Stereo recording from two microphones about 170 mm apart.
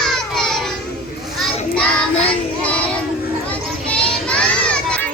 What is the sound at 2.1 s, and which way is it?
Child singing, 35° left (ahead or behind).